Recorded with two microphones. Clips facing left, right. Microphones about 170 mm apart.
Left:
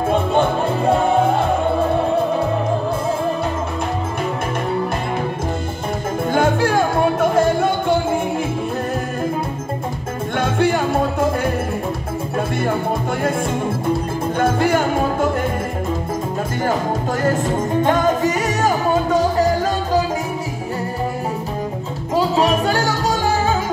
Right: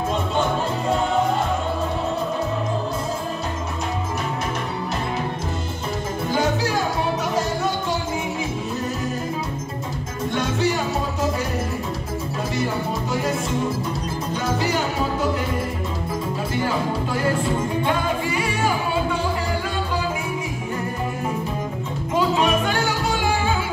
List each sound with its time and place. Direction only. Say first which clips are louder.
0.1 s music: left 7 dB; 60° left (ahead or behind)
6.3 s music: left 5 dB; 55° left (ahead or behind)
10.3 s music: left 5 dB; 55° left (ahead or behind)
13.2 s music: left 3 dB; 55° left (ahead or behind)
16.5 s music: left 3 dB; 45° left (ahead or behind)
22.1 s music: left 3 dB; 35° left (ahead or behind)